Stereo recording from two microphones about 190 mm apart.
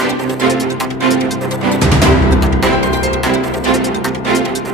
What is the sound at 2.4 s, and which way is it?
Music, centre (ahead or behind).